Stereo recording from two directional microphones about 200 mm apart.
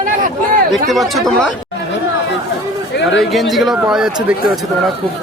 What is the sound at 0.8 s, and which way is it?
Speech, centre (ahead or behind).